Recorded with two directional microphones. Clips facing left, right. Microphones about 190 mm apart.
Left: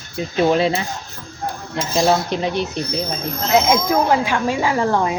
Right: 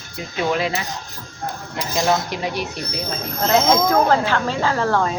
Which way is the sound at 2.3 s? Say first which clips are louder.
Left 4 dB; 25° left (ahead or behind).